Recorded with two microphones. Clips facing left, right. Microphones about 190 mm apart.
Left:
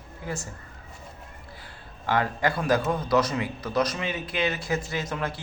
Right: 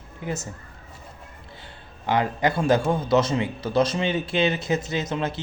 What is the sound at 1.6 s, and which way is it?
A man's voice, 20° right (ahead or behind).